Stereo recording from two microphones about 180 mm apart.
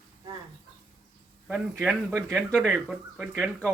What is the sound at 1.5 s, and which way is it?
Speech, 5° left (ahead or behind).